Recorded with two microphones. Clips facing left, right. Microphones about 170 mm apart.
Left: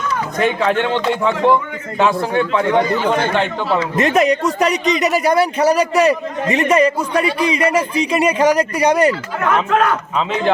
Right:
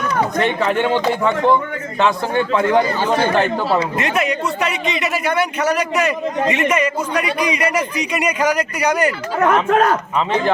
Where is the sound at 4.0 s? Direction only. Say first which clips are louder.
Left 5 dB; 40° left (ahead or behind).